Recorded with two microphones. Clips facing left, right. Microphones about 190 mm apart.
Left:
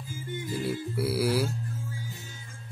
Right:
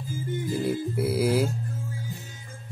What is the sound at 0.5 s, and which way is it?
Music, 20° right (ahead or behind).